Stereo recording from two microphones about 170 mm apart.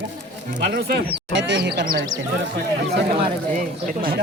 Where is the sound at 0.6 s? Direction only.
70° right (ahead or behind).